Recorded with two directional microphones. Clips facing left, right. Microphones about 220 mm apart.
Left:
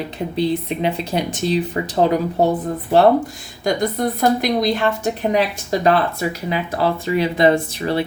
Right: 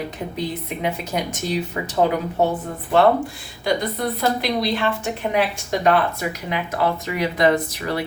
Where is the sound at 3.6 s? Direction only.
45° left (ahead or behind).